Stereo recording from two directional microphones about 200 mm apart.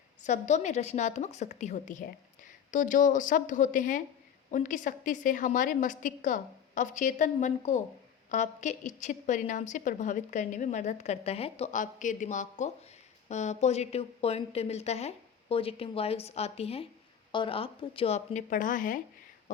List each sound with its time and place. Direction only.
0.3 s a woman's voice: 35° left (ahead or behind)